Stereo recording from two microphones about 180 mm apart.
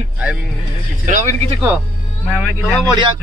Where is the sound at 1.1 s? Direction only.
40° right (ahead or behind).